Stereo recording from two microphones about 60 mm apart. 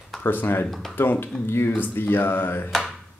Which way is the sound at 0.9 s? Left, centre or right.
Left.